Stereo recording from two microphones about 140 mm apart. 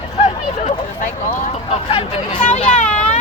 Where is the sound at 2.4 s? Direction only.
55° left (ahead or behind).